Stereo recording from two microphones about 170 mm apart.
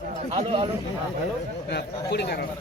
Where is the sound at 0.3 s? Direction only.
35° right (ahead or behind).